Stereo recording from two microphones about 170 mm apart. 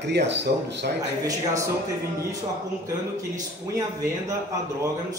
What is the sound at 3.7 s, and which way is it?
Speech, 15° right (ahead or behind).